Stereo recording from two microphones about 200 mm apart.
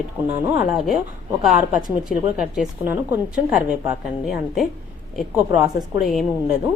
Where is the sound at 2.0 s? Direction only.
5° right (ahead or behind).